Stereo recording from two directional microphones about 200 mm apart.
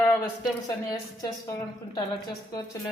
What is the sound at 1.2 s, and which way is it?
Speech, 20° left (ahead or behind).